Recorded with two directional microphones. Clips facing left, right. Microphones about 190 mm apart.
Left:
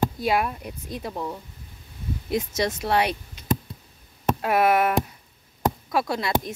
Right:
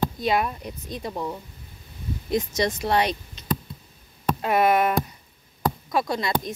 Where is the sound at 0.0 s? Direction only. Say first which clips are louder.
Even; 5° left (ahead or behind).